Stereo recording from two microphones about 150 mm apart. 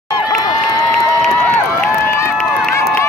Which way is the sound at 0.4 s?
25° left (ahead or behind).